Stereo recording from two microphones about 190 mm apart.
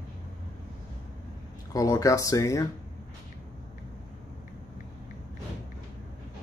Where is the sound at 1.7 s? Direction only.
20° left (ahead or behind).